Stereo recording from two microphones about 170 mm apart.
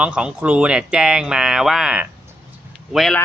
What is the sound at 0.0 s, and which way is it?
Speech, 5° right (ahead or behind).